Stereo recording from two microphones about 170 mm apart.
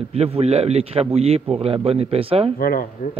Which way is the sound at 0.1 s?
40° right (ahead or behind).